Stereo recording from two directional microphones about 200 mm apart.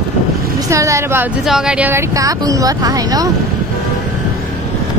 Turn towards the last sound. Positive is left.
turn(degrees=-20)  # may be behind; listen again after turning